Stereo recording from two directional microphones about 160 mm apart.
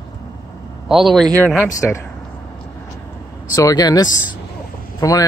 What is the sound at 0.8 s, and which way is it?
Speech, centre (ahead or behind).